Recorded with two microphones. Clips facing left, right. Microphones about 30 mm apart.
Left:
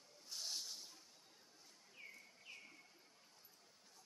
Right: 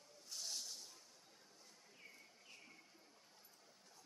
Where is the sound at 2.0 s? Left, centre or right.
Centre.